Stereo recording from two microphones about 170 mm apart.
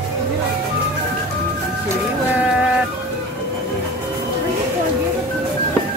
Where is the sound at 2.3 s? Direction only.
5° right (ahead or behind).